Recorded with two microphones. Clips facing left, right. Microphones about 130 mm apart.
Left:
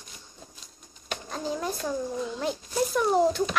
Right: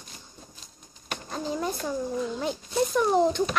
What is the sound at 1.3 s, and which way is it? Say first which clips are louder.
Speech: right 1 dB; centre (ahead or behind).